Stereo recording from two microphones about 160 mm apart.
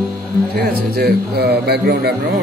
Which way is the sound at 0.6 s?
85° right.